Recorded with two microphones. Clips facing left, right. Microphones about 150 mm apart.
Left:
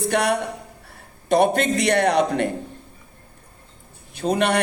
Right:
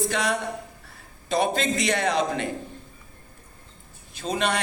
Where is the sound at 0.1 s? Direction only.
65° left (ahead or behind).